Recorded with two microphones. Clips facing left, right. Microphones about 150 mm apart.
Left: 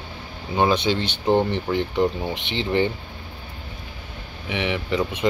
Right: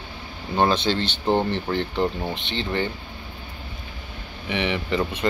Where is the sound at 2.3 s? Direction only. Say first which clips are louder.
Left 4 dB; 20° left (ahead or behind).